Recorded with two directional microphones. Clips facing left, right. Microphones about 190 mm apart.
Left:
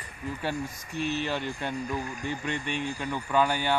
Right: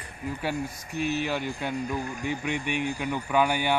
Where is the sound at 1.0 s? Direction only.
10° right (ahead or behind).